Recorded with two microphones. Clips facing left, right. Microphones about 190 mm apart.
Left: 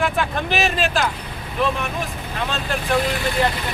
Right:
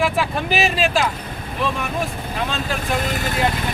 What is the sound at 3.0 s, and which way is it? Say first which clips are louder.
Speech: left 1 dB; 45° right (ahead or behind).